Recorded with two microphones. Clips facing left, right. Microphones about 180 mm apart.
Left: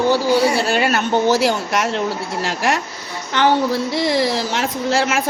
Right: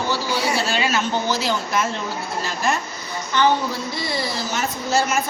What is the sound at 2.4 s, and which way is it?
Speech, 90° left.